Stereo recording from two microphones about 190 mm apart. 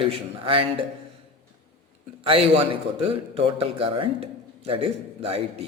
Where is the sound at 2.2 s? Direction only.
30° right (ahead or behind).